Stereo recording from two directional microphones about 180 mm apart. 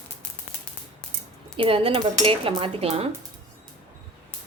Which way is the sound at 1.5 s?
30° right (ahead or behind).